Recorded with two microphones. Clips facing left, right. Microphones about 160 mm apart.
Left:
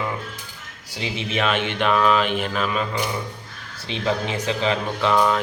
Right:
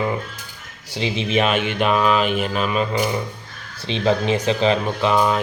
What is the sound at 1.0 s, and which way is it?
Speech, 25° right (ahead or behind).